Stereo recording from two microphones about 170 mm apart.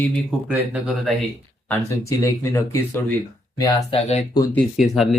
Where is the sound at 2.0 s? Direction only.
15° left (ahead or behind).